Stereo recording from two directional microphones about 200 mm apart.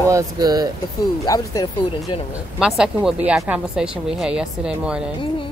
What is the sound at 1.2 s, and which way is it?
Speech, 20° left (ahead or behind).